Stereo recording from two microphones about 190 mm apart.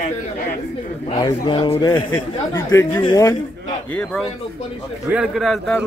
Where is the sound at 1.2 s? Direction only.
25° left (ahead or behind).